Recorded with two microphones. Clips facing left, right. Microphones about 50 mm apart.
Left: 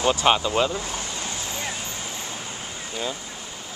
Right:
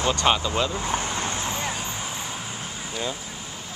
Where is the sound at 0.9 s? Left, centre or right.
Right.